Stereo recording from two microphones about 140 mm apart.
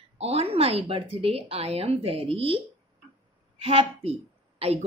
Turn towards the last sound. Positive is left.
turn(degrees=-45)  # may be behind; listen again after turning